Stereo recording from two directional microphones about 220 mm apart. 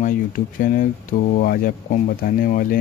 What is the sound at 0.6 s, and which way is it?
Speech, 40° left (ahead or behind).